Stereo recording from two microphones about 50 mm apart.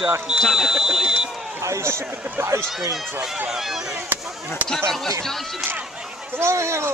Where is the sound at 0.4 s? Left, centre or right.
Centre.